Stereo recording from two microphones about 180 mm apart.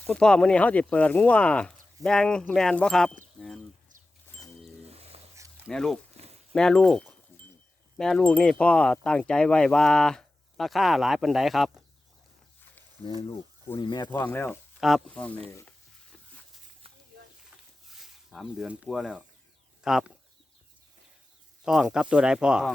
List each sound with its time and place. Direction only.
0.0 s speech: 5° left (ahead or behind)
4.9 s a sound: 35° right (ahead or behind)
5.6 s speech: centre (ahead or behind)
13.0 s speech: 25° left (ahead or behind)
14.1 s speech: 10° left (ahead or behind)
14.8 s speech: centre (ahead or behind)
17.8 s speech: centre (ahead or behind)
21.6 s speech: 5° right (ahead or behind)